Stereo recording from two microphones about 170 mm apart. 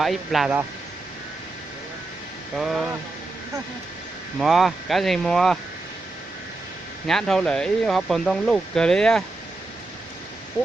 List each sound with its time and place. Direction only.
0.0 s speech: centre (ahead or behind)
2.6 s speech: centre (ahead or behind)
4.4 s speech: centre (ahead or behind)
7.1 s speech: centre (ahead or behind)